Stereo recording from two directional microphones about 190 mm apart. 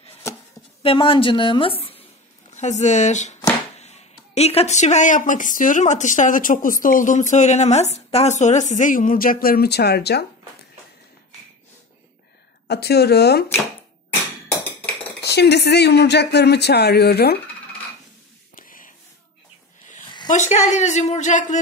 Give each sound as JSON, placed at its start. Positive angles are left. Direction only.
{"t": 0.8, "sound": "a woman's voice", "side_deg": 30}
{"t": 12.6, "sound": "speech", "side_deg": 60}
{"t": 15.2, "sound": "speech", "side_deg": 60}
{"t": 18.5, "sound": "a sound", "side_deg": 45}
{"t": 20.2, "sound": "speech", "side_deg": 40}